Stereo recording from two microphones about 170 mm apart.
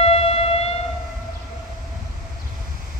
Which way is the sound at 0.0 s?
35° left (ahead or behind).